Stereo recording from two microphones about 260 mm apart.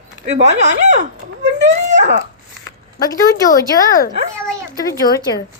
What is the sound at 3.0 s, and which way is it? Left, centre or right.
Speech, centre.